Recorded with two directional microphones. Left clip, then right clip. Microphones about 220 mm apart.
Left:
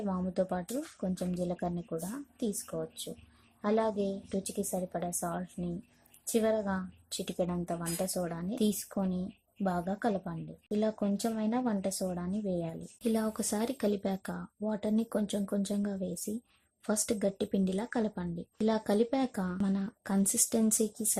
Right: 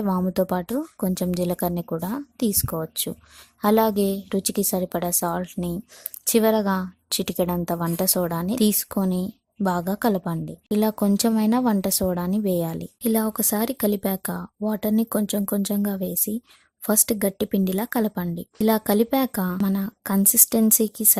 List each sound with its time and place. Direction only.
0.0 s a woman's voice: 40° right (ahead or behind)